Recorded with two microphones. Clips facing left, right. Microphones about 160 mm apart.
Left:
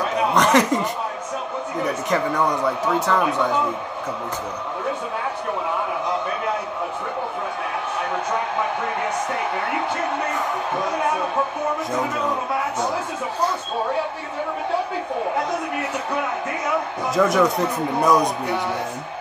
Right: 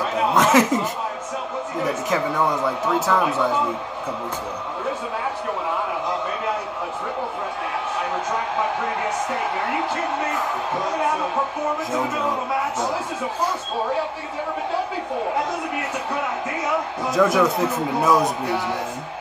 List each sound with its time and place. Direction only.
0.3 s speech: 5° right (ahead or behind)
17.1 s speech: centre (ahead or behind)